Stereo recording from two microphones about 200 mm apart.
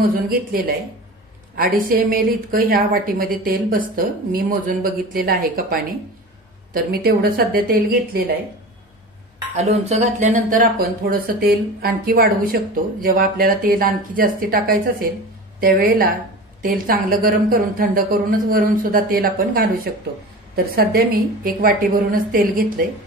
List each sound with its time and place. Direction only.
0.0 s speech: 45° right (ahead or behind)
9.6 s speech: 35° right (ahead or behind)